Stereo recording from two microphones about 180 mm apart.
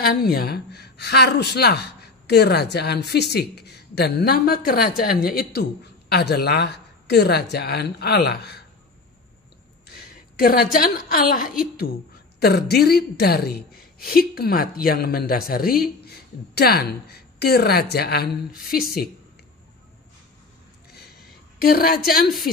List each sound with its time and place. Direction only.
0.0 s a woman's voice: 60° left (ahead or behind)
9.8 s a woman's voice: 55° left (ahead or behind)
12.4 s a woman's voice: 60° left (ahead or behind)
20.9 s a sound: 60° left (ahead or behind)